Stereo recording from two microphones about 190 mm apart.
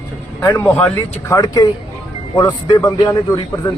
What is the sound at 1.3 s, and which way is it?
Speech, 20° left (ahead or behind).